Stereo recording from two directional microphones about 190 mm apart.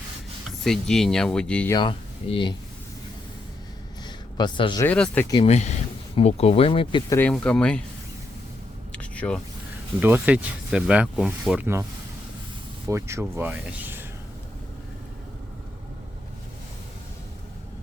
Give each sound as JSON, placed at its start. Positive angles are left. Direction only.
{"t": 0.6, "sound": "speech", "side_deg": 0}
{"t": 1.7, "sound": "speech", "side_deg": 25}
{"t": 4.0, "sound": "a sound", "side_deg": 25}
{"t": 4.9, "sound": "speech", "side_deg": 5}
{"t": 5.3, "sound": "speech", "side_deg": 30}
{"t": 7.1, "sound": "speech", "side_deg": 10}
{"t": 8.9, "sound": "a sound", "side_deg": 5}
{"t": 10.0, "sound": "speech", "side_deg": -10}
{"t": 12.9, "sound": "speech", "side_deg": -15}